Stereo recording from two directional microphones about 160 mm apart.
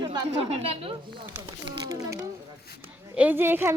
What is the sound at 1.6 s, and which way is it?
Speech, 20° right (ahead or behind).